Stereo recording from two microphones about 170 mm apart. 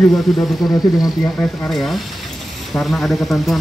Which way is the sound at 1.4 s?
Centre (ahead or behind).